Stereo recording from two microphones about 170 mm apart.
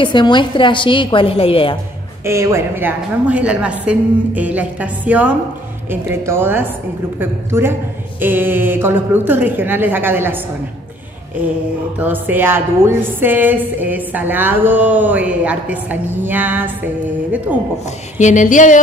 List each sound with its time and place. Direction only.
0.0 s a woman's voice: 25° left (ahead or behind)
2.2 s a woman's voice: 15° right (ahead or behind)
12.0 s a woman's voice: 10° right (ahead or behind)
18.2 s a sound: 45° left (ahead or behind)